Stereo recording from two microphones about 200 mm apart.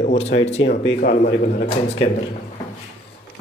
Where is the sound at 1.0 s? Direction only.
45° left (ahead or behind).